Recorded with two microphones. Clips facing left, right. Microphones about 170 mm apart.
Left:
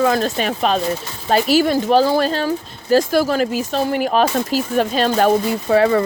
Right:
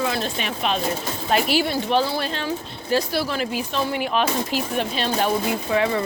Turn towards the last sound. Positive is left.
turn(degrees=45)  # may be behind; listen again after turning